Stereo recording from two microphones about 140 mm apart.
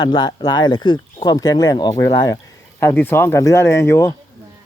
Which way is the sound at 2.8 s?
15° left (ahead or behind).